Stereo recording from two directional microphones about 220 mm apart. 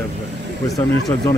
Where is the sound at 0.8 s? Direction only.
20° left (ahead or behind).